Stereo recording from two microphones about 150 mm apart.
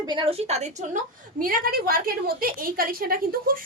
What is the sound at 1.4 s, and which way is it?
A woman's voice, 70° right (ahead or behind).